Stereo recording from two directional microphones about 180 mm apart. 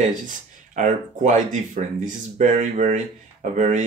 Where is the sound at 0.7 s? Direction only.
45° right (ahead or behind).